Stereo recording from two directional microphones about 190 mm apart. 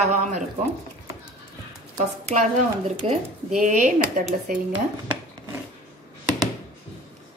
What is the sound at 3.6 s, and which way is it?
Speech, 40° right (ahead or behind).